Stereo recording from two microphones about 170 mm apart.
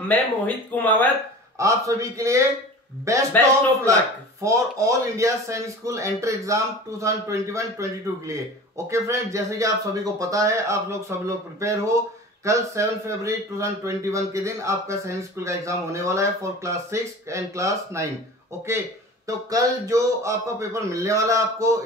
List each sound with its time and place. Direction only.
0.1 s speech: 10° left (ahead or behind)
1.6 s a man's voice: 20° right (ahead or behind)